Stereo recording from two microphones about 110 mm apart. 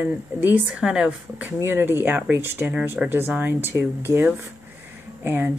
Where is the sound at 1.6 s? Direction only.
20° right (ahead or behind).